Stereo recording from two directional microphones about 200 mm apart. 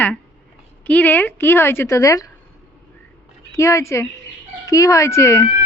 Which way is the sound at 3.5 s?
15° left (ahead or behind).